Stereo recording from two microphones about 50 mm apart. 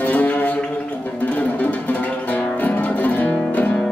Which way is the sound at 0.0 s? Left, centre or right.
Left.